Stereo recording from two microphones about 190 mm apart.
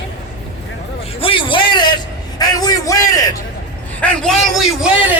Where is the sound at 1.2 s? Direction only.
25° left (ahead or behind).